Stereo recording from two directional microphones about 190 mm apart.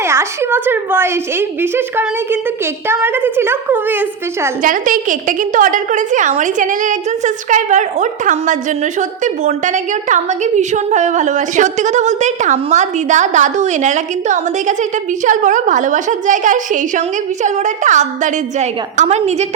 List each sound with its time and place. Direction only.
0.0 s a woman's voice: 15° right (ahead or behind)
4.6 s a woman's voice: 45° right (ahead or behind)